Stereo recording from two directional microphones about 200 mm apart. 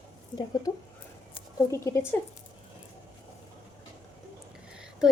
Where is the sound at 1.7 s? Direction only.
15° left (ahead or behind).